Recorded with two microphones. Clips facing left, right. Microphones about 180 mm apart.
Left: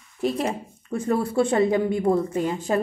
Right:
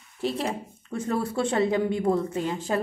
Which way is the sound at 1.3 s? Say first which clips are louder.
Left 4 dB; 10° left (ahead or behind).